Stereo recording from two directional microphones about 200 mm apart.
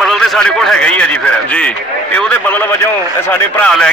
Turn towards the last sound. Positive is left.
turn(degrees=5)  # may be behind; listen again after turning